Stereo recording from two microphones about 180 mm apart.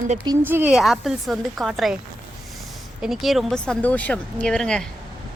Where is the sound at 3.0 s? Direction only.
Centre (ahead or behind).